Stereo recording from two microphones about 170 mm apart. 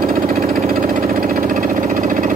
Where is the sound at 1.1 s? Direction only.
55° right (ahead or behind).